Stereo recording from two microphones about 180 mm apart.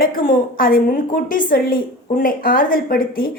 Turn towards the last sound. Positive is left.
turn(degrees=55)  # may be behind; listen again after turning